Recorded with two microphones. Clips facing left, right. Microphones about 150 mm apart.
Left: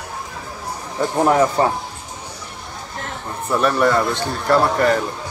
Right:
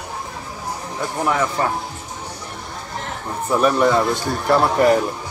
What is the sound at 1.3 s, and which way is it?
Speech, 30° left (ahead or behind).